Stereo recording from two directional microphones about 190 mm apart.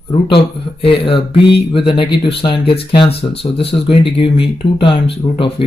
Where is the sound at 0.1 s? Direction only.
30° left (ahead or behind).